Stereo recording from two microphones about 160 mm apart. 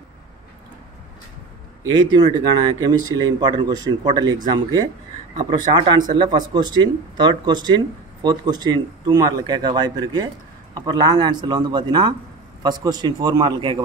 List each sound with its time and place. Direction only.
1.9 s speech: 30° right (ahead or behind)